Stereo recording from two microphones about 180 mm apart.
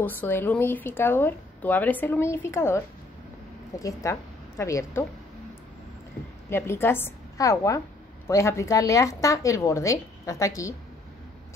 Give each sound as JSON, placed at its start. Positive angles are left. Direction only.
{"t": 0.0, "sound": "speech", "side_deg": 10}
{"t": 3.8, "sound": "a woman's voice", "side_deg": 15}
{"t": 6.5, "sound": "speech", "side_deg": 15}